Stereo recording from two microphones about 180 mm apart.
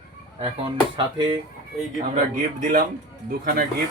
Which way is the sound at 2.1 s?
45° right (ahead or behind).